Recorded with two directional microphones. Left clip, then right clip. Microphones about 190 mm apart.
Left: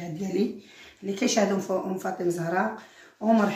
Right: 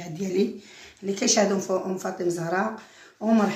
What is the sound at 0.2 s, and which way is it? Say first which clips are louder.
Speech: right 3 dB; 30° right (ahead or behind).